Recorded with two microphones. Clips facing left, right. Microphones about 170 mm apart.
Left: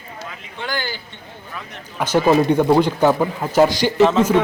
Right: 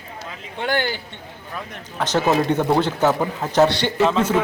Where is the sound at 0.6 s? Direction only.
60° right (ahead or behind).